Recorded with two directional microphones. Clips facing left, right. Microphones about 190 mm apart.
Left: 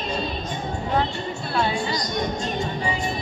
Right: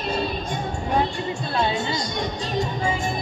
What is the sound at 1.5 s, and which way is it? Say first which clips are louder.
Music: even; 20° right (ahead or behind).